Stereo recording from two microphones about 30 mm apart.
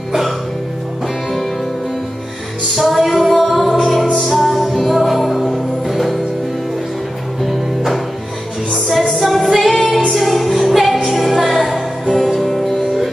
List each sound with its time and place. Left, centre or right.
2.7 s music: centre
7.4 s music: centre
9.2 s music: centre